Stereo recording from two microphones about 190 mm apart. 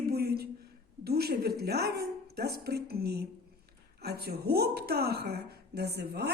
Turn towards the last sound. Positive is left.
turn(degrees=-60)  # may be behind; listen again after turning